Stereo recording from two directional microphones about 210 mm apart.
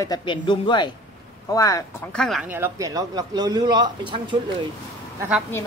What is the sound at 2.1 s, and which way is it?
A man's voice, centre (ahead or behind).